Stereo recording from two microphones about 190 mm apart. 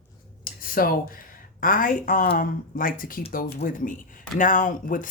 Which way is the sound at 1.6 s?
45° left (ahead or behind).